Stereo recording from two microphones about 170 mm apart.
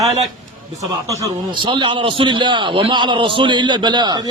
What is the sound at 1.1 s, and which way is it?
A man's voice, 25° right (ahead or behind).